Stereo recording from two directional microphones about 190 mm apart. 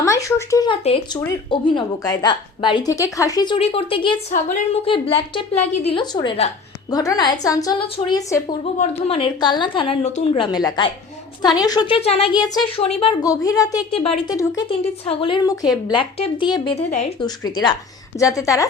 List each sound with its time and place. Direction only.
0.0 s speech: 15° left (ahead or behind)
0.9 s a woman's voice: 30° left (ahead or behind)
4.3 s a woman's voice: 40° left (ahead or behind)
4.9 s a woman's voice: 30° left (ahead or behind)
13.2 s a woman's voice: 20° left (ahead or behind)
13.7 s a woman's voice: 30° left (ahead or behind)
14.3 s a woman's voice: 20° left (ahead or behind)
15.0 s a woman's voice: 30° left (ahead or behind)
17.2 s a woman's voice: 20° left (ahead or behind)